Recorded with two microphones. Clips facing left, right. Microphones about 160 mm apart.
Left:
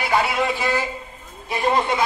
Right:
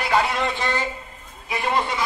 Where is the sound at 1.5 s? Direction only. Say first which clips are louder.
Left 3 dB; 40° left (ahead or behind).